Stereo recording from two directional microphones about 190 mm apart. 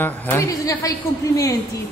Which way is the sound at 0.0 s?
15° left (ahead or behind).